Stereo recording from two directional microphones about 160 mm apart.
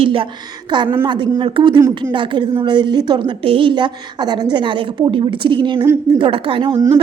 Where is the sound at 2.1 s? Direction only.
30° right (ahead or behind).